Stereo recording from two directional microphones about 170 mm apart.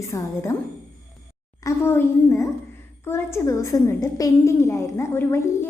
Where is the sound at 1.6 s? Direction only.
15° left (ahead or behind).